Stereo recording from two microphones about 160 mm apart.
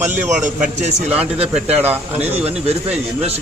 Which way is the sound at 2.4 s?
40° right (ahead or behind).